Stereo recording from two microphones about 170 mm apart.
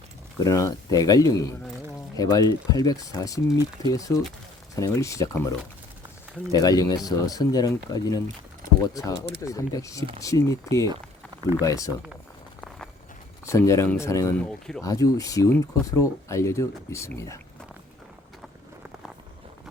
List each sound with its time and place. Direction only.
0.3 s speech: 20° left (ahead or behind)
13.4 s speech: 15° left (ahead or behind)